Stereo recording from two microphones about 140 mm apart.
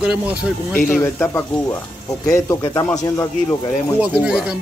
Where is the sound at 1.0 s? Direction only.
15° left (ahead or behind).